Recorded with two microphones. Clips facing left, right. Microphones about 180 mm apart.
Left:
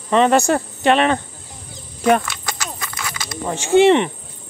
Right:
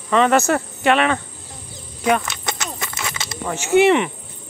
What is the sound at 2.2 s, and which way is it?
Horse, 20° right (ahead or behind).